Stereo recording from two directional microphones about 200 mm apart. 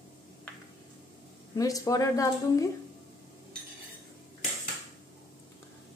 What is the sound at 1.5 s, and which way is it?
A woman's voice, 15° left (ahead or behind).